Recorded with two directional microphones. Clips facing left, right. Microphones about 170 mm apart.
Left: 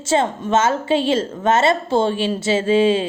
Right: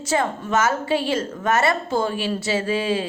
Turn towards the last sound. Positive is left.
turn(degrees=25)  # may be behind; listen again after turning